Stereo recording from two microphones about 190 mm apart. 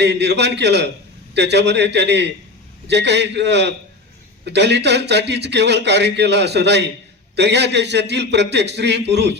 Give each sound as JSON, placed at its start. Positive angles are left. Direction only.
{"t": 0.0, "sound": "a man's voice", "side_deg": -65}